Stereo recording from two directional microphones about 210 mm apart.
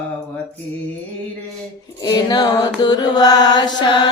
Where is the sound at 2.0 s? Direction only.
20° left (ahead or behind).